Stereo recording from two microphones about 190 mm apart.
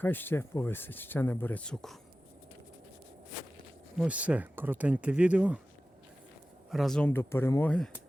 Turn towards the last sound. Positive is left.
turn(degrees=5)  # may be behind; listen again after turning